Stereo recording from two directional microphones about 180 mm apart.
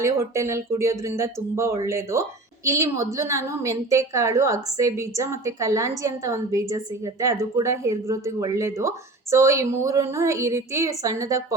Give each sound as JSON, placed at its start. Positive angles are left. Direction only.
{"t": 0.0, "sound": "a woman's voice", "side_deg": -15}